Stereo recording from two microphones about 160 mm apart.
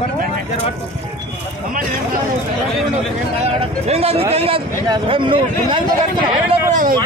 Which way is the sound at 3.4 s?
40° right (ahead or behind).